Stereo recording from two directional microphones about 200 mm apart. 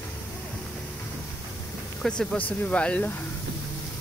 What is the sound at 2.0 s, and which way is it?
Speech, 5° left (ahead or behind).